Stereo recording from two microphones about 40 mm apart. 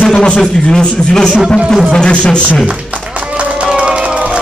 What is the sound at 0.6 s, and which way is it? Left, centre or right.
A man's voice, left.